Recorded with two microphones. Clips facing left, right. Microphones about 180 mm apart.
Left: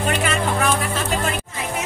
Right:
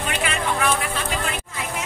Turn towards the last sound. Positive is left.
turn(degrees=45)  # may be behind; listen again after turning